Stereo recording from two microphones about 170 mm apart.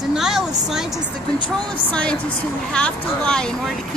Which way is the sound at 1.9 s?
5° left (ahead or behind).